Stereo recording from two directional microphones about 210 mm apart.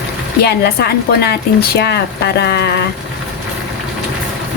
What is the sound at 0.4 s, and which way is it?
Speech, 50° left (ahead or behind).